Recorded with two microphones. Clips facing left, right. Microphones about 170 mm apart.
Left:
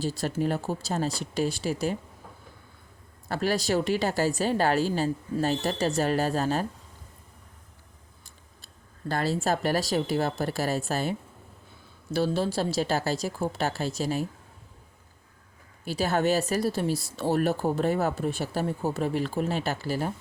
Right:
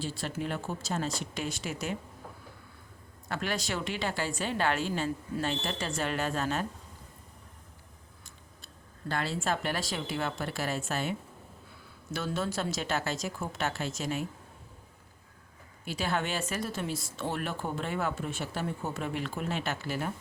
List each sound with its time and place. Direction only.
0.0 s speech: 40° left (ahead or behind)
3.2 s speech: 35° left (ahead or behind)
8.6 s speech: 40° left (ahead or behind)
12.1 s speech: 30° left (ahead or behind)
15.8 s speech: 35° left (ahead or behind)